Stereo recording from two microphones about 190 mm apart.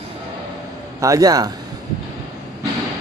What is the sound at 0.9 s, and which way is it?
Speech, 15° right (ahead or behind).